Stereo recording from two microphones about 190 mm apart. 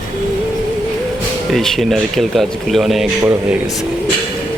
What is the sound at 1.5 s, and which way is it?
Speech, centre (ahead or behind).